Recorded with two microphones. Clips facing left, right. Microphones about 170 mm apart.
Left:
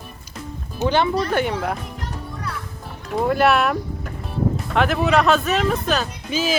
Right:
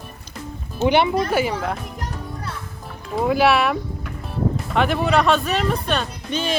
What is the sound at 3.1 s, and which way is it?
Speech, centre (ahead or behind).